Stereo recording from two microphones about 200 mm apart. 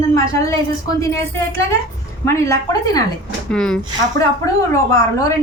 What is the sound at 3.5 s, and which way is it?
Speech, 5° left (ahead or behind).